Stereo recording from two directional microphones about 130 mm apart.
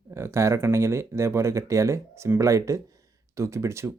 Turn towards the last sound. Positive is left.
turn(degrees=-20)  # may be behind; listen again after turning